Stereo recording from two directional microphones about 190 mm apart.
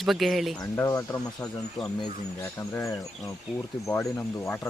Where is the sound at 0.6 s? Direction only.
20° left (ahead or behind).